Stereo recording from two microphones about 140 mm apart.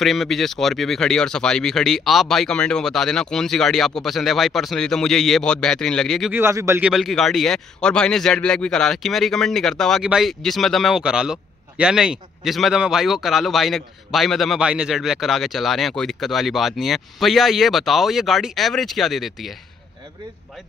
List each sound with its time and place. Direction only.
0.0 s a man's voice: centre (ahead or behind)
6.3 s speech: 20° right (ahead or behind)
6.8 s a man's voice: centre (ahead or behind)